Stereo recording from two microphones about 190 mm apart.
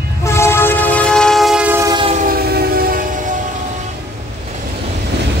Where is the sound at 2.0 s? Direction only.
40° right (ahead or behind).